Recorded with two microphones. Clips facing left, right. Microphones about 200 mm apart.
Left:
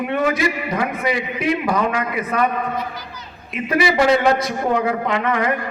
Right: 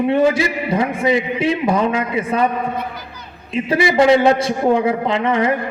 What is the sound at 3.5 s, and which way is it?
A man's voice, 30° right (ahead or behind).